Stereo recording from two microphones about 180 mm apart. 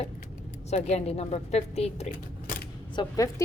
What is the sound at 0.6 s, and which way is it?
Speech, 40° left (ahead or behind).